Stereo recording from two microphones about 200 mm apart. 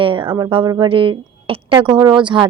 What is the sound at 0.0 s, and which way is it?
Speech, 25° right (ahead or behind).